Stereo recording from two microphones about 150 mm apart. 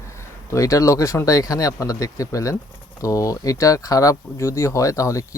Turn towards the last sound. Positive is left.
turn(degrees=20)  # may be behind; listen again after turning